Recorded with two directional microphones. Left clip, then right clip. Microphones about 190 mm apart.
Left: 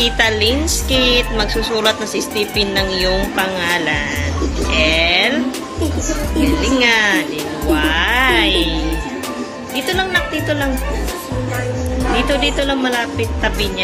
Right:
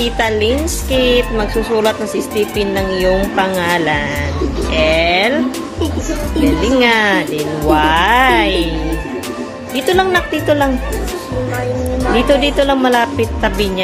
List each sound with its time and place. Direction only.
0.9 s speech: 15° right (ahead or behind)
3.3 s speech: 30° right (ahead or behind)
4.7 s music: 25° right (ahead or behind)
6.8 s speech: 35° right (ahead or behind)
9.8 s speech: 40° right (ahead or behind)
12.3 s speech: 35° right (ahead or behind)